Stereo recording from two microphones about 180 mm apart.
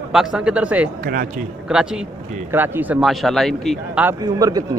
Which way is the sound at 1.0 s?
55° right (ahead or behind).